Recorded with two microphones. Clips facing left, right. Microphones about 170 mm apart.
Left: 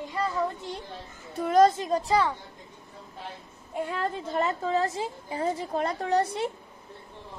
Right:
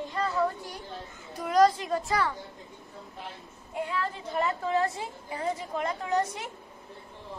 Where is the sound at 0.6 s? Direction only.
25° left (ahead or behind).